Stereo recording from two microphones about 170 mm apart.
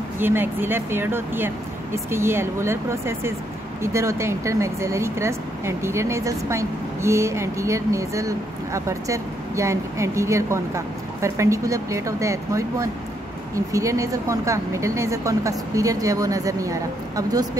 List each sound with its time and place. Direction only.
0.2 s speech: 10° right (ahead or behind)